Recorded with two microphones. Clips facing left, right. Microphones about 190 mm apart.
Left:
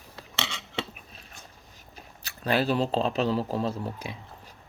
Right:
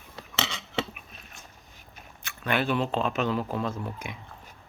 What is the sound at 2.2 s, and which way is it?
Speech, 35° left (ahead or behind).